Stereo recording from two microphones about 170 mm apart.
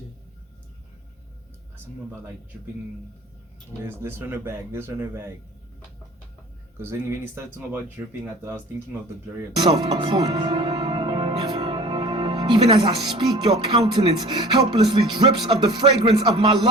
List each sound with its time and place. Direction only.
3.8 s speech: 15° right (ahead or behind)
6.9 s speech: 15° right (ahead or behind)
9.6 s speech: 25° right (ahead or behind)
15.1 s music: 25° right (ahead or behind)